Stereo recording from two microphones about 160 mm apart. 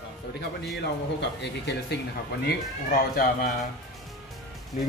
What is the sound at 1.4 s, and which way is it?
Speech, 90° left.